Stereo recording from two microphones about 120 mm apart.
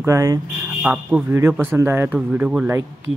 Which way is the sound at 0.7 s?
10° right (ahead or behind).